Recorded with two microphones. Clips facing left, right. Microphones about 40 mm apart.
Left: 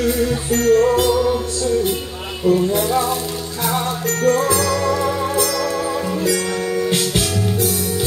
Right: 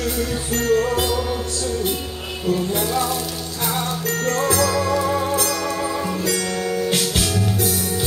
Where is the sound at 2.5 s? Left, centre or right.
Left.